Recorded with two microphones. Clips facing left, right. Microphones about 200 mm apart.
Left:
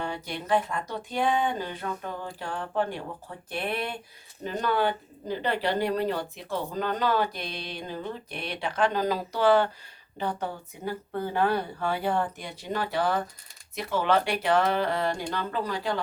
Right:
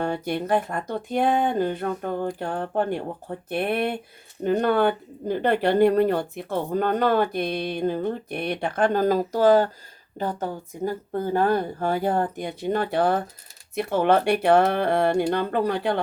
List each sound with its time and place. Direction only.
0.0 s speech: 55° right (ahead or behind)